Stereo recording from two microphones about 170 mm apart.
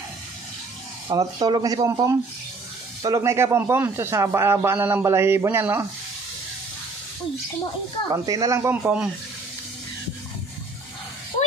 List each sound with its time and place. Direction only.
1.0 s speech: 25° right (ahead or behind)
8.1 s speech: 20° right (ahead or behind)